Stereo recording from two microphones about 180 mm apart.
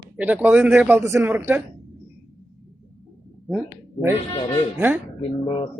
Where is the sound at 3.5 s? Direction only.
5° right (ahead or behind).